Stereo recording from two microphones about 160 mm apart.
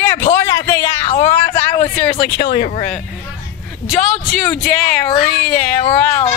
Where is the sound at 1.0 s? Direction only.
40° left (ahead or behind).